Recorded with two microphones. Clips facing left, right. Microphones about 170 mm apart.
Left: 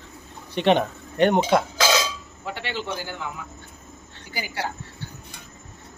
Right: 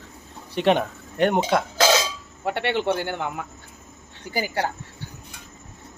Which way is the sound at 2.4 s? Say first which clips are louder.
Right 8 dB; 60° right (ahead or behind).